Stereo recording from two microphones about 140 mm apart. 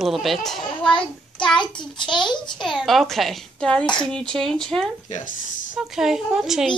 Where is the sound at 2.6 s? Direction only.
Centre (ahead or behind).